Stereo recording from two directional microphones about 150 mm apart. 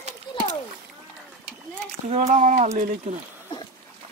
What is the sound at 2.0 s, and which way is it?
Speech, 50° right (ahead or behind).